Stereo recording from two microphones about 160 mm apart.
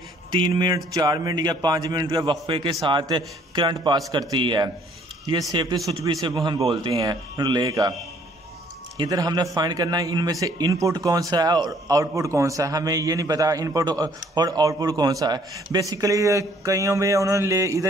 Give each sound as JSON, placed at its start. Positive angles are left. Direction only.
{"t": 0.3, "sound": "a man's voice", "side_deg": -30}
{"t": 8.9, "sound": "speech", "side_deg": -25}